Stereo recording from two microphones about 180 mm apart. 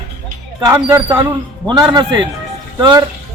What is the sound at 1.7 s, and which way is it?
A man's voice, 25° right (ahead or behind).